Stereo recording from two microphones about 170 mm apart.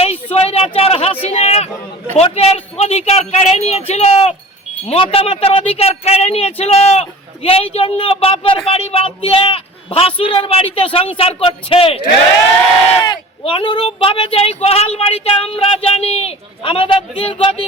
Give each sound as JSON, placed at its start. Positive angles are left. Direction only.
{"t": 0.3, "sound": "a man's voice", "side_deg": 35}
{"t": 1.2, "sound": "a sound", "side_deg": 35}
{"t": 2.1, "sound": "speech", "side_deg": 35}